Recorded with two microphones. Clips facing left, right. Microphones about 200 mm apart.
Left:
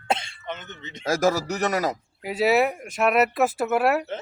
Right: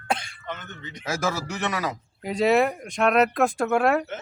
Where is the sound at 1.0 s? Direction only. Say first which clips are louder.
Left 6 dB; 40° left (ahead or behind).